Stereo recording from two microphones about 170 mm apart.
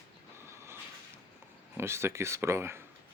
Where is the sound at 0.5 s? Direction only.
15° right (ahead or behind).